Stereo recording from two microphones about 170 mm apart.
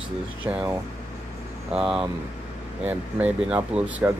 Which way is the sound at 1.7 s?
5° right (ahead or behind).